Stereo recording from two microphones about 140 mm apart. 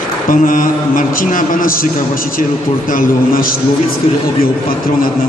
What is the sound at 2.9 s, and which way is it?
Speech, 90° left.